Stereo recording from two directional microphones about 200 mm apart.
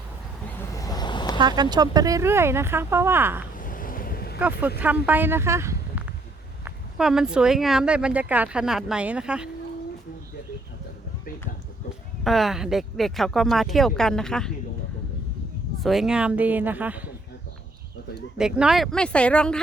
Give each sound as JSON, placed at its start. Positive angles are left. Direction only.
{"t": 0.7, "sound": "vehicle", "side_deg": 15}
{"t": 1.4, "sound": "speech", "side_deg": -20}
{"t": 3.6, "sound": "vehicle", "side_deg": 45}
{"t": 5.0, "sound": "speech", "side_deg": -10}
{"t": 6.7, "sound": "speech", "side_deg": -5}
{"t": 12.2, "sound": "speech", "side_deg": 0}
{"t": 15.8, "sound": "speech", "side_deg": 0}
{"t": 18.3, "sound": "speech", "side_deg": -5}